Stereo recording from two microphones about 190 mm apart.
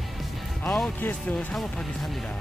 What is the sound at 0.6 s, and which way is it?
Speech, 5° left (ahead or behind).